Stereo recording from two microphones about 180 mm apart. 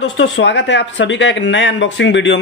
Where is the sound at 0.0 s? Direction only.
75° left (ahead or behind).